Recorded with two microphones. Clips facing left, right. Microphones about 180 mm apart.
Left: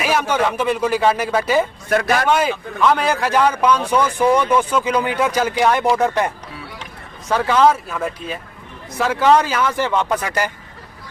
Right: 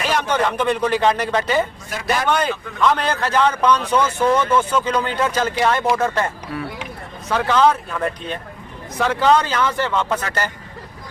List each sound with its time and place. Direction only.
0.0 s speech: 10° left (ahead or behind)
1.9 s speech: 60° left (ahead or behind)
2.2 s speech: 5° left (ahead or behind)